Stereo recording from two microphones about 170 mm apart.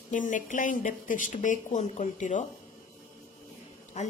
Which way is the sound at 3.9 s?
45° left (ahead or behind).